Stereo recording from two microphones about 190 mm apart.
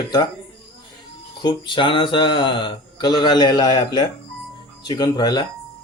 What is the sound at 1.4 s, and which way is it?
Speech, 25° left (ahead or behind).